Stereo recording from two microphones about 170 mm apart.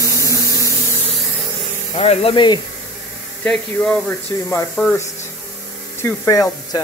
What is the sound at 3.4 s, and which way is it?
Speech, 5° left (ahead or behind).